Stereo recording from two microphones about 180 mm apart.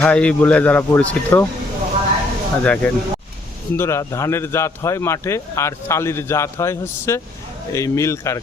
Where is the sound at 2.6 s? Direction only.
5° left (ahead or behind).